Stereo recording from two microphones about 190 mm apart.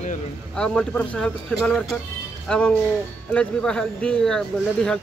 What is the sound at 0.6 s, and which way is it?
Speech, 5° left (ahead or behind).